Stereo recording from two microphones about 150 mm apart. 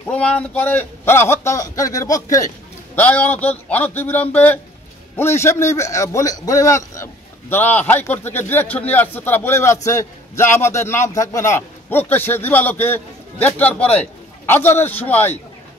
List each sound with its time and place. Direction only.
0.0 s a man's voice: 10° left (ahead or behind)
3.0 s a man's voice: 10° left (ahead or behind)